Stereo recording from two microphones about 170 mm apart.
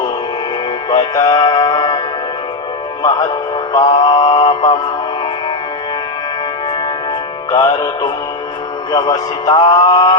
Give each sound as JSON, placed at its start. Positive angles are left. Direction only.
{"t": 0.9, "sound": "music", "side_deg": 20}
{"t": 3.0, "sound": "a man's voice", "side_deg": 20}
{"t": 7.5, "sound": "a man's voice", "side_deg": 25}